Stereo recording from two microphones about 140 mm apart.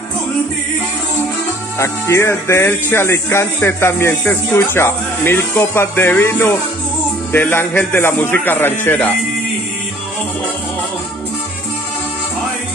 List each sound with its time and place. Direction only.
1.8 s speech: 20° left (ahead or behind)